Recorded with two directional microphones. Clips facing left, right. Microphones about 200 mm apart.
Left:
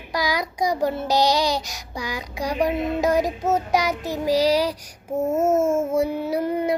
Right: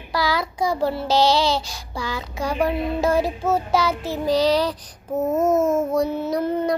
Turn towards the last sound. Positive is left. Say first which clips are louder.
# right 1 dB
turn(degrees=10)  # may be behind; listen again after turning